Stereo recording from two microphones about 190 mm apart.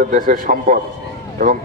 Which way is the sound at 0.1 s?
45° right (ahead or behind).